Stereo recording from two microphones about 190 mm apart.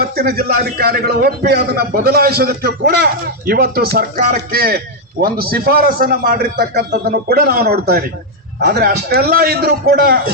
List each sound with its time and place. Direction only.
0.0 s a man's voice: 55° right (ahead or behind)